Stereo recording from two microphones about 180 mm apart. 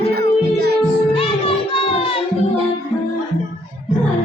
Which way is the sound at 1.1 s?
30° left (ahead or behind).